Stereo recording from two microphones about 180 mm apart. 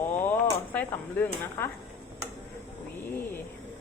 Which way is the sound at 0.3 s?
10° left (ahead or behind).